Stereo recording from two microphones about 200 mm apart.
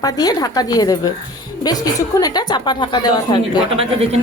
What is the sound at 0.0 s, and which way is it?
A woman's voice, 20° left (ahead or behind).